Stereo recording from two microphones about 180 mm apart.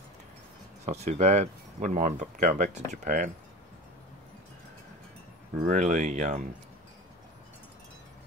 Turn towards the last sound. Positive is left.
turn(degrees=-45)  # may be behind; listen again after turning